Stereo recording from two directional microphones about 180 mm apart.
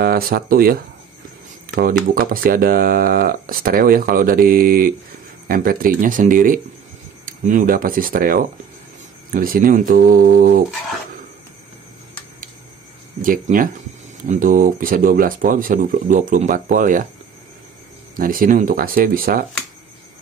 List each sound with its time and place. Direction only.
0.0 s speech: 55° right (ahead or behind)
2.1 s speech: 50° right (ahead or behind)
13.2 s speech: 50° right (ahead or behind)
18.1 s speech: 50° right (ahead or behind)